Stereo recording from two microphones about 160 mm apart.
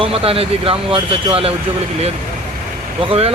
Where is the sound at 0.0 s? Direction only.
35° right (ahead or behind).